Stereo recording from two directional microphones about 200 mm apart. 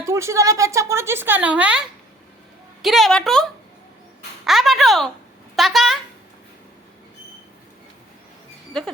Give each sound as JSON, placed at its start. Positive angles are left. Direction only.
{"t": 0.0, "sound": "speech", "side_deg": -15}
{"t": 2.8, "sound": "a woman's voice", "side_deg": 0}
{"t": 4.4, "sound": "a woman's voice", "side_deg": 0}
{"t": 8.7, "sound": "a woman's voice", "side_deg": 0}